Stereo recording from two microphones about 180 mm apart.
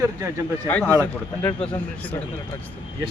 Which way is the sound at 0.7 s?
10° left (ahead or behind).